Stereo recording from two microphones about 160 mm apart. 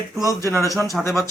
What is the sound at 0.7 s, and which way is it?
Speech, centre (ahead or behind).